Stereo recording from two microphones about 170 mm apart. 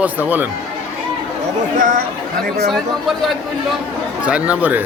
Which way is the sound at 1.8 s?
55° right (ahead or behind).